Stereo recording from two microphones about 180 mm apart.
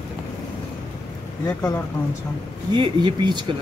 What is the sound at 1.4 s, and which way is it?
Speech, 15° left (ahead or behind).